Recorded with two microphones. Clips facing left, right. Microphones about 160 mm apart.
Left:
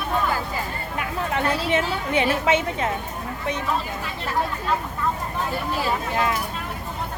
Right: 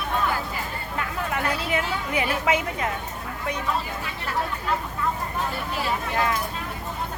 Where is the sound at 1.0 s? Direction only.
25° left (ahead or behind).